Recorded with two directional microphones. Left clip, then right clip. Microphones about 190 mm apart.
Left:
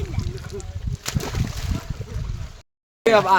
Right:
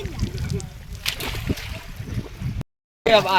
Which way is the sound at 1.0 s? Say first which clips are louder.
Right 3 dB; 45° left (ahead or behind).